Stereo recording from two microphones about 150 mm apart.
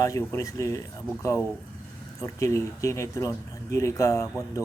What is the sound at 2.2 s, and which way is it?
Speech, 20° left (ahead or behind).